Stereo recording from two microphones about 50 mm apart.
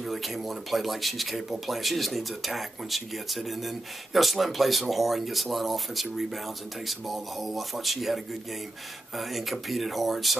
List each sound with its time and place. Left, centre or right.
0.0 s speech: centre